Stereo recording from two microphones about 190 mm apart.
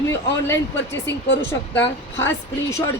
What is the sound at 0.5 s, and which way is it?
Speech, 70° left (ahead or behind).